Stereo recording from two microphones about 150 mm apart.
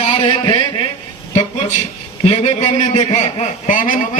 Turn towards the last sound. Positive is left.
turn(degrees=60)  # may be behind; listen again after turning